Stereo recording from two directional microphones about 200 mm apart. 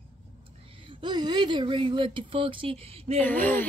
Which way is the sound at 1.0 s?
20° right (ahead or behind).